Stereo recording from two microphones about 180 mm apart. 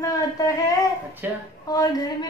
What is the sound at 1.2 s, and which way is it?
Speech, 10° right (ahead or behind).